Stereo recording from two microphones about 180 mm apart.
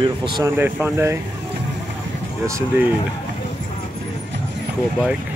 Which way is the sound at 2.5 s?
15° right (ahead or behind).